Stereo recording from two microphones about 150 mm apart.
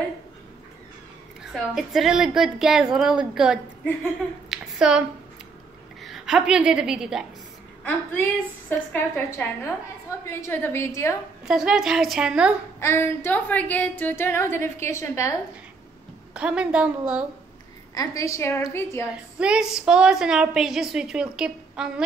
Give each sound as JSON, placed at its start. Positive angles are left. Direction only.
{"t": 1.5, "sound": "a woman's voice", "side_deg": 0}
{"t": 4.5, "sound": "a sound", "side_deg": -5}
{"t": 6.0, "sound": "a woman's voice", "side_deg": -5}
{"t": 7.8, "sound": "a woman's voice", "side_deg": 10}
{"t": 11.4, "sound": "a woman's voice", "side_deg": -5}
{"t": 12.8, "sound": "a woman's voice", "side_deg": 15}
{"t": 16.3, "sound": "a woman's voice", "side_deg": -5}
{"t": 17.9, "sound": "a woman's voice", "side_deg": 25}
{"t": 19.3, "sound": "a woman's voice", "side_deg": -5}